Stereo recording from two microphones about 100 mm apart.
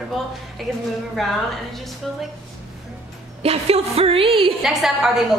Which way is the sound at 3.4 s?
90° right.